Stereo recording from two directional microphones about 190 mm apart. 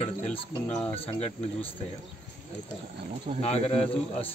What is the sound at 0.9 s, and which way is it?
Speech, 30° left (ahead or behind).